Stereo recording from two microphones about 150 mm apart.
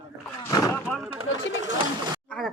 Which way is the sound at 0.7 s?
10° left (ahead or behind).